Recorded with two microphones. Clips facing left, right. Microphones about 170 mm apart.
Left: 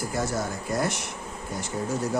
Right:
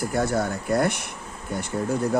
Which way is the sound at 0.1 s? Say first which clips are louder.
Right 5 dB; 60° right (ahead or behind).